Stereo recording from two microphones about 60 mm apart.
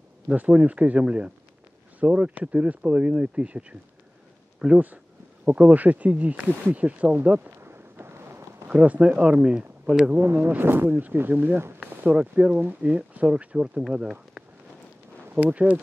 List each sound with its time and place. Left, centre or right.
0.3 s speech: right
7.6 s a sound: right
8.6 s speech: right
10.1 s speech: right
12.0 s speech: right
15.4 s speech: right